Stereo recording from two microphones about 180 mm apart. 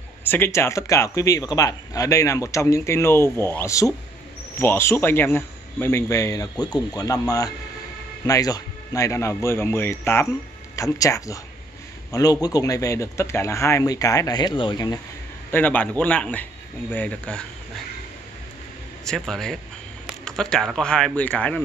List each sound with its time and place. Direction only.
0.2 s speech: 10° left (ahead or behind)
15.5 s speech: 10° left (ahead or behind)
19.0 s speech: centre (ahead or behind)